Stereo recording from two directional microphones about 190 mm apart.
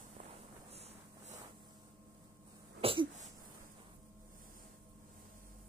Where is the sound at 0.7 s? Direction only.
35° right (ahead or behind).